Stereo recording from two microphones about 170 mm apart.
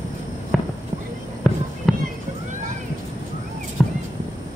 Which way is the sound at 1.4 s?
Centre (ahead or behind).